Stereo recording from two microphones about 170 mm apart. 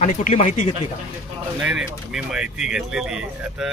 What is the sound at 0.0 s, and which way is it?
Speech, 45° left (ahead or behind).